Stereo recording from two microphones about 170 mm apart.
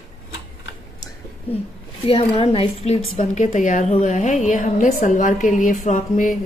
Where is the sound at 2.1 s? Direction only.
35° left (ahead or behind).